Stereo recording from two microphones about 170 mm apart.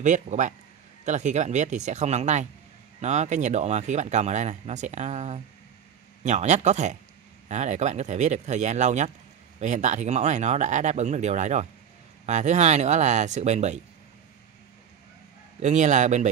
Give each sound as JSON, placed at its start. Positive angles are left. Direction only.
{"t": 0.0, "sound": "speech", "side_deg": -45}
{"t": 15.6, "sound": "speech", "side_deg": -45}